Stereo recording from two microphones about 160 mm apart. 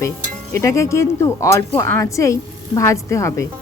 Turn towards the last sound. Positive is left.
turn(degrees=20)  # may be behind; listen again after turning